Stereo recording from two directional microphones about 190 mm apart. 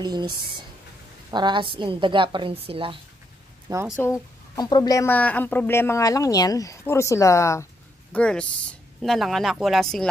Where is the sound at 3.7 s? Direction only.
20° right (ahead or behind).